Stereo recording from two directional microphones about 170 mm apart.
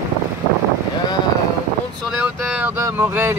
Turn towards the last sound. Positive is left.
turn(degrees=-15)  # may be behind; listen again after turning